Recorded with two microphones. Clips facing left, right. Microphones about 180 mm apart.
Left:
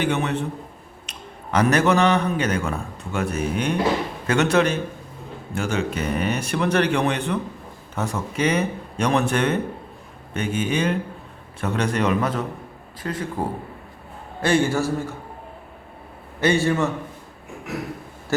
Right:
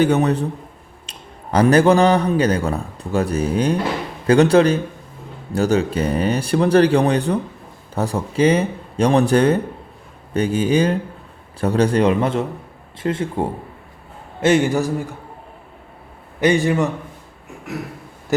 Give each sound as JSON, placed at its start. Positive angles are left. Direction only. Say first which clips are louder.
{"t": 0.0, "sound": "a man's voice", "louder": "right 7 dB", "side_deg": -40}
{"t": 16.4, "sound": "a man's voice", "louder": "right 3 dB", "side_deg": -15}